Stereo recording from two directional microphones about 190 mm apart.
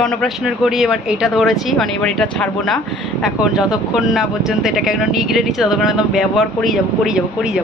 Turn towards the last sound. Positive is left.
turn(degrees=0)  # may be behind; listen again after turning